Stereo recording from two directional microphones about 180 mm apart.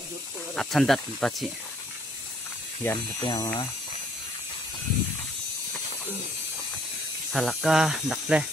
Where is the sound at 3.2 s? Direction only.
25° left (ahead or behind).